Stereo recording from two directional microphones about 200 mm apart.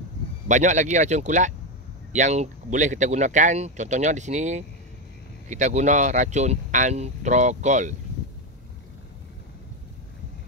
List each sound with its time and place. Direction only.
0.5 s speech: 35° right (ahead or behind)